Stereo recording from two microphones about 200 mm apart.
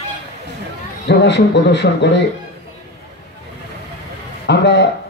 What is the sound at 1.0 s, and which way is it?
Speech, 60° left (ahead or behind).